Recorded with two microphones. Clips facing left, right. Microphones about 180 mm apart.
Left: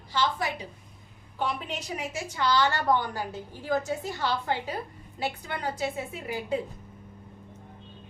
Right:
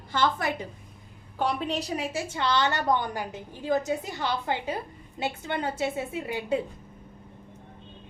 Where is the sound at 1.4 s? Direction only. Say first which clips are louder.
Right 4 dB; 35° right (ahead or behind).